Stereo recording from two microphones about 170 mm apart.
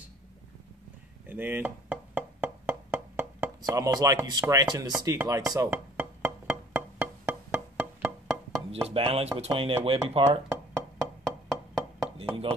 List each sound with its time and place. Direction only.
1.2 s music: 10° right (ahead or behind)
5.0 s speech: 20° right (ahead or behind)
5.5 s music: 15° right (ahead or behind)
8.3 s music: 5° left (ahead or behind)
8.8 s speech: 35° right (ahead or behind)
11.0 s wood block: 5° left (ahead or behind)